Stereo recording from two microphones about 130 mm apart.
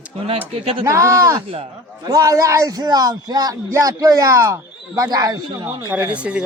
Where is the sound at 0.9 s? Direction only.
25° right (ahead or behind).